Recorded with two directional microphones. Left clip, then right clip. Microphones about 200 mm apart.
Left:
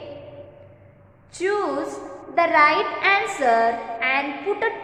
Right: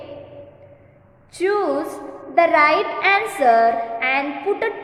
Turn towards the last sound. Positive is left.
turn(degrees=-15)  # may be behind; listen again after turning